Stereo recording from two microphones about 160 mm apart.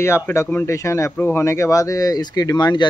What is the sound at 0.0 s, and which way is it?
Speech, 15° left (ahead or behind).